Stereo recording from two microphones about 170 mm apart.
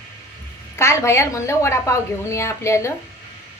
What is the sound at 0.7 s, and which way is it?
A woman's voice, 15° left (ahead or behind).